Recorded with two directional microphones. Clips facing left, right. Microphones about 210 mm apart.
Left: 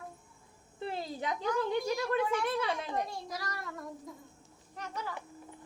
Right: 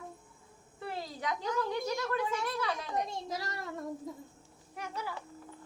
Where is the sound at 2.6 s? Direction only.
25° left (ahead or behind).